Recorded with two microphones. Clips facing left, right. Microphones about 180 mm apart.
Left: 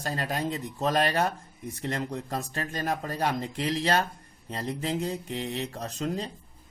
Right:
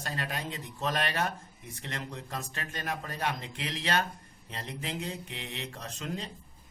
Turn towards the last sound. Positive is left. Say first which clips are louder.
# left 6 dB
turn(degrees=40)  # may be behind; listen again after turning